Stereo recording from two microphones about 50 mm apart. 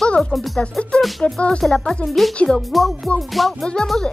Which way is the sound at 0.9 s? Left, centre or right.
Centre.